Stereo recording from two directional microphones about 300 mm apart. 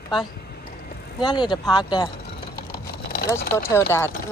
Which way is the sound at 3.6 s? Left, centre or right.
Centre.